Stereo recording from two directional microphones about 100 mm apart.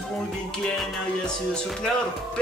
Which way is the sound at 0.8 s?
5° left (ahead or behind).